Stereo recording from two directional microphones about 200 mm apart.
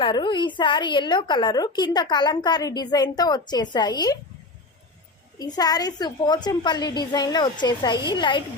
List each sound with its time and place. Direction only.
0.0 s a woman's voice: 25° left (ahead or behind)
5.4 s a woman's voice: 20° left (ahead or behind)